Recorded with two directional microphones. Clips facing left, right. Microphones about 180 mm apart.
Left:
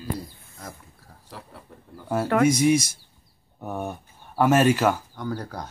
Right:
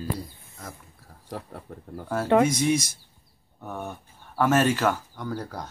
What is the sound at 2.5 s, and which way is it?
Speech, 10° left (ahead or behind).